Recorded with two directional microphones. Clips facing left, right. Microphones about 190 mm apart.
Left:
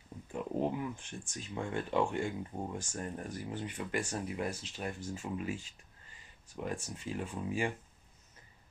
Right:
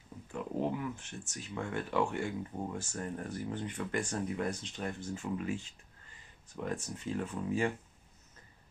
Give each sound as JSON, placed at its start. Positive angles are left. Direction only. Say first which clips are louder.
{"t": 0.3, "sound": "a sound", "louder": "even", "side_deg": 20}
{"t": 1.3, "sound": "speech", "louder": "even", "side_deg": 25}
{"t": 5.1, "sound": "speech", "louder": "right 2 dB", "side_deg": 25}
{"t": 6.5, "sound": "speech", "louder": "right 1 dB", "side_deg": 10}